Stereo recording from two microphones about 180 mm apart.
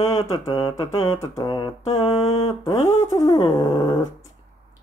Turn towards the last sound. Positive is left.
turn(degrees=20)  # may be behind; listen again after turning